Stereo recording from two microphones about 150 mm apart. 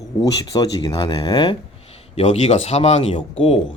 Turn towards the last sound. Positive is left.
turn(degrees=45)  # may be behind; listen again after turning